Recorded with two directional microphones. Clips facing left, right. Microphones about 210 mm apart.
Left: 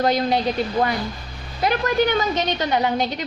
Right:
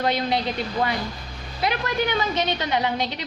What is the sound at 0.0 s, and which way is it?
Speech, 40° left (ahead or behind).